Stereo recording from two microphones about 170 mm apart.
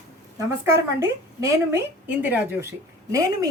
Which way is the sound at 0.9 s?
15° right (ahead or behind).